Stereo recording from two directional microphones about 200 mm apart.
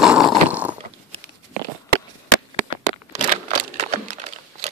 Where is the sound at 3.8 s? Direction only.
35° right (ahead or behind).